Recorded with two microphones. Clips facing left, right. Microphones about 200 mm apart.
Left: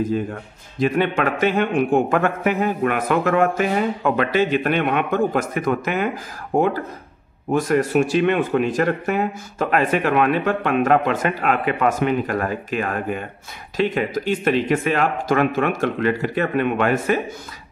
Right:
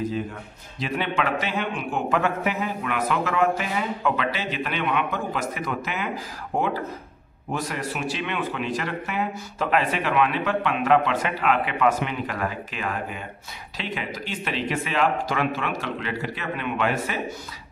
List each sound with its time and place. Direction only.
0.0 s a man's voice: 50° left (ahead or behind)